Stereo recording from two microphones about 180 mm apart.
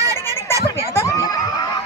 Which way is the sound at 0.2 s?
15° left (ahead or behind).